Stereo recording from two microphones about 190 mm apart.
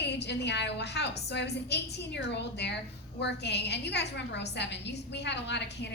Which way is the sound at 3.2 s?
60° left (ahead or behind).